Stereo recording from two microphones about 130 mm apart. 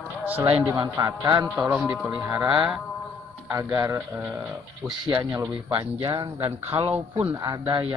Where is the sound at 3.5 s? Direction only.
20° right (ahead or behind).